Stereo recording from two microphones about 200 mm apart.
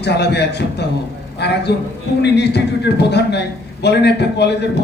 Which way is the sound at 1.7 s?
60° left (ahead or behind).